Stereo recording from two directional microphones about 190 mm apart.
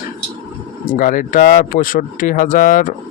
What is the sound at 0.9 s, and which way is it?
Speech, 45° left (ahead or behind).